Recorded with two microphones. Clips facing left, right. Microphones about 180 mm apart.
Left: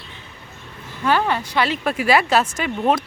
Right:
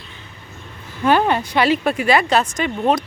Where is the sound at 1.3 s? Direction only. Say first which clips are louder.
Right 4 dB; 20° right (ahead or behind).